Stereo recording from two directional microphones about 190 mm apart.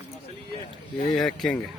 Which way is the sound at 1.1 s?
Centre (ahead or behind).